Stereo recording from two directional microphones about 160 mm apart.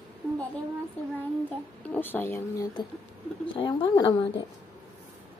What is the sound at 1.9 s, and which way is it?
Speech, 10° left (ahead or behind).